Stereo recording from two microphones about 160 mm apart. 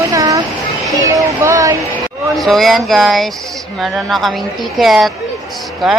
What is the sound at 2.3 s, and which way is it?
Speech, centre (ahead or behind).